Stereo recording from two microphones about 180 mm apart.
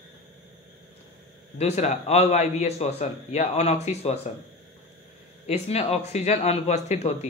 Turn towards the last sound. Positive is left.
turn(degrees=40)  # may be behind; listen again after turning